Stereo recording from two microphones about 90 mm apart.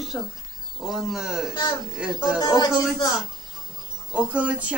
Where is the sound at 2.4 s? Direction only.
50° left (ahead or behind).